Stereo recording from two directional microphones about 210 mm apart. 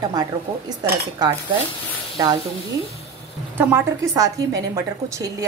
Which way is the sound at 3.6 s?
15° right (ahead or behind).